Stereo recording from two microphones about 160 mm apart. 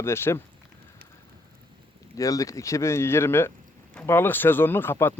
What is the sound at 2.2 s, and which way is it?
Speech, 20° left (ahead or behind).